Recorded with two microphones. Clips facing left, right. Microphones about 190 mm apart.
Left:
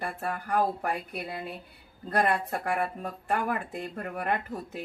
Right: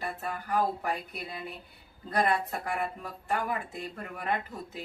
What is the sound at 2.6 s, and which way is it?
Speech, 55° left (ahead or behind).